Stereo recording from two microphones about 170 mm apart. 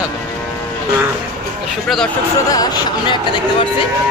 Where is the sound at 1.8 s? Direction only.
Centre (ahead or behind).